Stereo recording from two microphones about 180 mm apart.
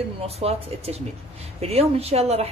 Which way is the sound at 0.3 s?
35° right (ahead or behind).